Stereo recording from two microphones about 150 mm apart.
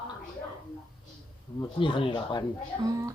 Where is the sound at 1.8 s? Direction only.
35° left (ahead or behind).